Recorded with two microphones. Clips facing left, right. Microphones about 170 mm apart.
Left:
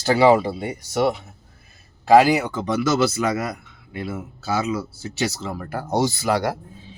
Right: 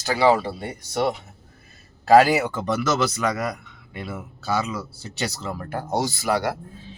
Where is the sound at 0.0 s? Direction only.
25° left (ahead or behind); by 1.2 s 10° left (ahead or behind).